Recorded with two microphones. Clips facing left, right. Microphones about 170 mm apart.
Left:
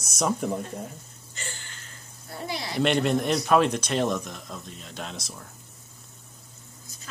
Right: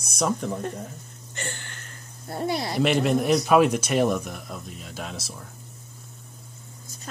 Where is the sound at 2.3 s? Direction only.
45° right (ahead or behind).